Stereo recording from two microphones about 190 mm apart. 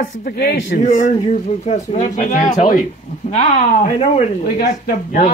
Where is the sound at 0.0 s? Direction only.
55° left (ahead or behind).